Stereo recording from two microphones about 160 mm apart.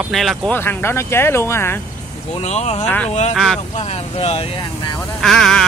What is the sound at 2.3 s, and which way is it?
Speech, 45° left (ahead or behind).